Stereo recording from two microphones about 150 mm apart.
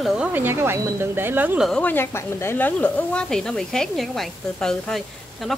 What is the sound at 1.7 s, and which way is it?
Speech, 10° left (ahead or behind).